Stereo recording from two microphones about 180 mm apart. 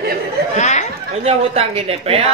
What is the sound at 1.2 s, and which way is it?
A woman's voice, 35° right (ahead or behind).